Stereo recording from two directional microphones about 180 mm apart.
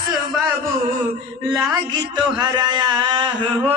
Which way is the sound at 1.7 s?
20° right (ahead or behind).